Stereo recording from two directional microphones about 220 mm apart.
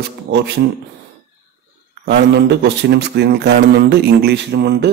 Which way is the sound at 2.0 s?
50° right (ahead or behind).